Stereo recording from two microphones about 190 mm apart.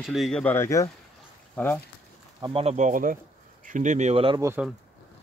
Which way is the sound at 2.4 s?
30° right (ahead or behind).